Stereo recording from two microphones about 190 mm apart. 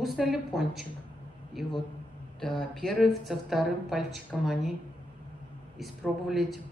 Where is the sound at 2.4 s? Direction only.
5° left (ahead or behind).